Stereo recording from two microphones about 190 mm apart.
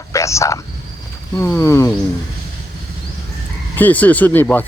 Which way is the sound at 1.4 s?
15° left (ahead or behind).